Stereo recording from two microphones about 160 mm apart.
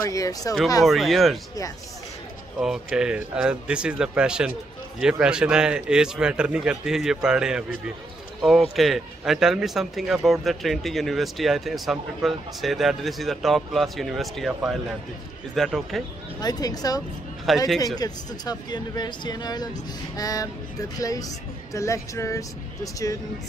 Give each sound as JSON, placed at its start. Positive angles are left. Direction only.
{"t": 0.1, "sound": "speech", "side_deg": 20}
{"t": 0.8, "sound": "speech", "side_deg": 0}
{"t": 2.6, "sound": "speech", "side_deg": -5}
{"t": 16.3, "sound": "speech", "side_deg": 25}